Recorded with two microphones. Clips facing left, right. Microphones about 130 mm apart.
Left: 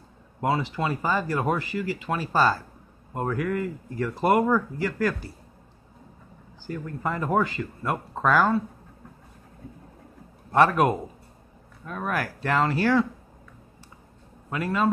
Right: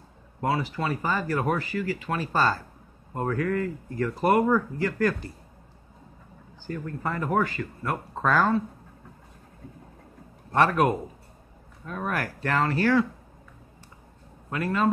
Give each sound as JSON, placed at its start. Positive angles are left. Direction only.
{"t": 0.4, "sound": "speech", "side_deg": 15}
{"t": 6.7, "sound": "speech", "side_deg": 10}
{"t": 11.8, "sound": "speech", "side_deg": 0}
{"t": 12.4, "sound": "speech", "side_deg": 15}
{"t": 14.5, "sound": "speech", "side_deg": 10}